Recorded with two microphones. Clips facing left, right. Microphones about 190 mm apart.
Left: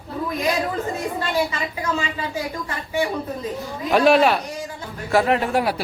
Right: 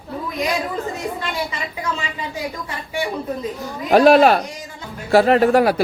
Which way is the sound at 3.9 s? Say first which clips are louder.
Right 4 dB; 40° right (ahead or behind).